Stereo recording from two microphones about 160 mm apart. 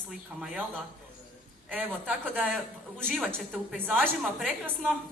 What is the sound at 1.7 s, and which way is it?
A man's voice, 10° right (ahead or behind).